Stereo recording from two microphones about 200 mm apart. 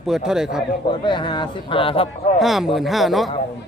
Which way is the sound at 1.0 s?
25° left (ahead or behind).